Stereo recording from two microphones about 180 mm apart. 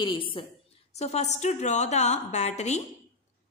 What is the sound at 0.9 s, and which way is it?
A woman's voice, 35° left (ahead or behind).